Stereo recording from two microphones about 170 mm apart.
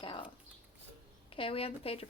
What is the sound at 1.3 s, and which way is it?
Speech, 35° left (ahead or behind).